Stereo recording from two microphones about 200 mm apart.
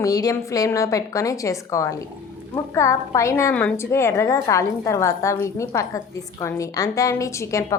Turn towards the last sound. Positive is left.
turn(degrees=15)  # may be behind; listen again after turning